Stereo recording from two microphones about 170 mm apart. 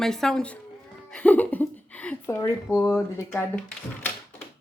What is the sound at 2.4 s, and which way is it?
Speech, 20° left (ahead or behind).